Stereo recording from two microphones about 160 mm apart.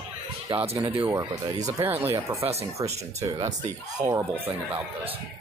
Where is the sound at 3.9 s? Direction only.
20° right (ahead or behind).